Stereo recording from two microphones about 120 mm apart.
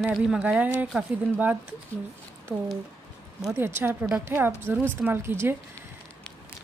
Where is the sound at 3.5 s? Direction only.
20° right (ahead or behind).